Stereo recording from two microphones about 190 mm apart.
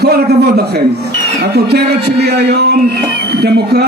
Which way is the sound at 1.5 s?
55° right (ahead or behind).